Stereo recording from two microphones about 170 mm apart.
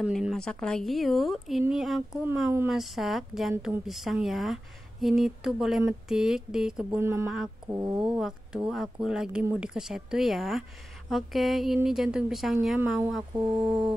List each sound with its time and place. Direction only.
0.0 s speech: centre (ahead or behind)
7.2 s mantra: 5° right (ahead or behind)
7.7 s speech: 10° right (ahead or behind)
13.3 s mantra: 20° right (ahead or behind)